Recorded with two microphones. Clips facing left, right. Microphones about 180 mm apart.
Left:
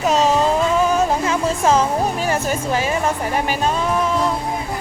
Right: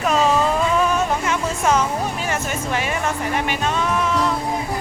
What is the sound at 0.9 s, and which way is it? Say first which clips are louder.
Music: left 3 dB; 35° left (ahead or behind).